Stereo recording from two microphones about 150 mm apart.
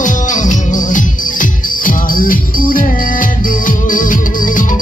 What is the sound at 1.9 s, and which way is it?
Music, 65° left (ahead or behind).